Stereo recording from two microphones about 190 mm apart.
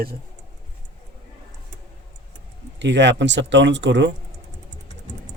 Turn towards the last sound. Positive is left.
turn(degrees=-70)  # may be behind; listen again after turning